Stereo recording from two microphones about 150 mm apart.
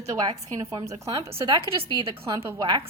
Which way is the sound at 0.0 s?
25° right (ahead or behind).